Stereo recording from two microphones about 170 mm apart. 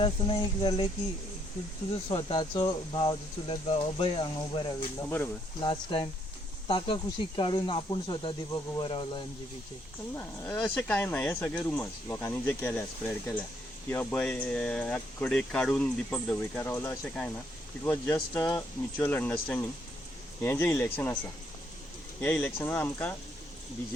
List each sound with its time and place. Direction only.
0.0 s speech: 30° left (ahead or behind)
2.0 s speech: 30° left (ahead or behind)
5.5 s speech: 30° left (ahead or behind)
10.2 s speech: 15° left (ahead or behind)
22.2 s speech: 10° left (ahead or behind)